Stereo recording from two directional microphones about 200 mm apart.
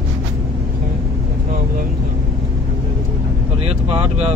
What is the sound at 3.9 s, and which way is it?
Vehicle, 30° right (ahead or behind).